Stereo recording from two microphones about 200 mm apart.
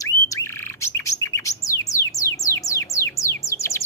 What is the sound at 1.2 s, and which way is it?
Bird, 15° left (ahead or behind).